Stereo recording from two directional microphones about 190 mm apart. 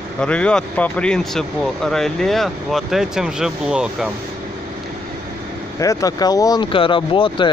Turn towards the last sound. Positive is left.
turn(degrees=25)  # may be behind; listen again after turning